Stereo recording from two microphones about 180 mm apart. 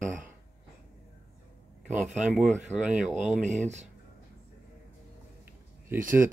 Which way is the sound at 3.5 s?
40° right (ahead or behind).